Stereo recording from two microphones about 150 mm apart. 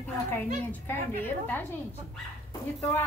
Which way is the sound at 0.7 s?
15° left (ahead or behind).